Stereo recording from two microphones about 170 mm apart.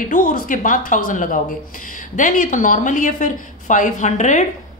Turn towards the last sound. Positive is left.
turn(degrees=45)  # may be behind; listen again after turning